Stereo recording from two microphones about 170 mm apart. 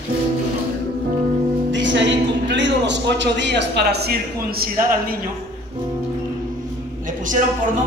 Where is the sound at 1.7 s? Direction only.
90° right; by 4.7 s 65° right (ahead or behind).